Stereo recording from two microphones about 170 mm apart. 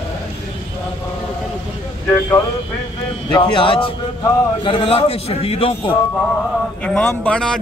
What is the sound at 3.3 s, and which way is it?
A man's voice, 30° left (ahead or behind).